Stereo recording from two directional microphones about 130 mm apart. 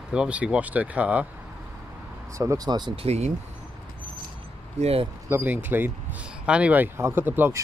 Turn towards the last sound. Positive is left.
turn(degrees=-15)  # may be behind; listen again after turning